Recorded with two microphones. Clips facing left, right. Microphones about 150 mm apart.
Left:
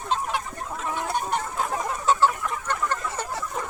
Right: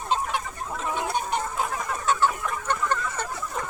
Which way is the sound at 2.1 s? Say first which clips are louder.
Left 3 dB; 30° left (ahead or behind).